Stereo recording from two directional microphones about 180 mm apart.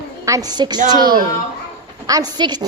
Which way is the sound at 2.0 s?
20° right (ahead or behind).